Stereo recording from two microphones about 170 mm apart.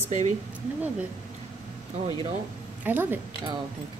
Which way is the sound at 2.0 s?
30° right (ahead or behind).